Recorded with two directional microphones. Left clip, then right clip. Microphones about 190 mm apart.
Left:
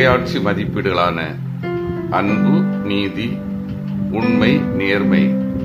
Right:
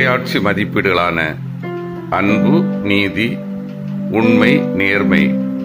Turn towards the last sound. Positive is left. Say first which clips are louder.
# right 3 dB
turn(degrees=-20)  # may be behind; listen again after turning